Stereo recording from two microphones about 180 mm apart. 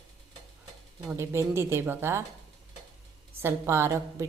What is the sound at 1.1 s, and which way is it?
A woman's voice, 15° right (ahead or behind).